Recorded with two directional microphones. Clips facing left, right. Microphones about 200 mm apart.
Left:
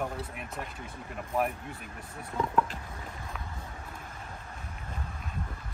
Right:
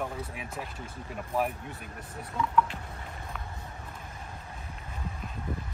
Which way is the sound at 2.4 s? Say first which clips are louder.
Right 1 dB; 40° left (ahead or behind).